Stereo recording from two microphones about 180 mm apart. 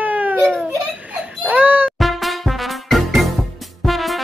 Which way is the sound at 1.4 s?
10° right (ahead or behind).